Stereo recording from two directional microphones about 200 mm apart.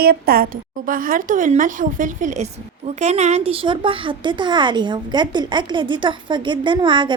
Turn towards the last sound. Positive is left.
turn(degrees=-25)  # may be behind; listen again after turning